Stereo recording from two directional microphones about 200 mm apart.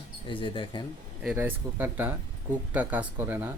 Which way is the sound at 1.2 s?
10° right (ahead or behind).